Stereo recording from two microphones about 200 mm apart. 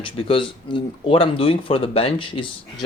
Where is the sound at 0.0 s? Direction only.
25° left (ahead or behind).